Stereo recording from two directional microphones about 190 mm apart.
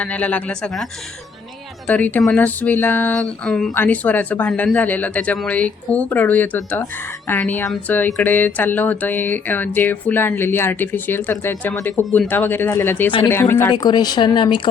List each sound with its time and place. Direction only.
0.0 s speech: 5° left (ahead or behind)
1.9 s speech: 10° left (ahead or behind); by 14.7 s 25° left (ahead or behind)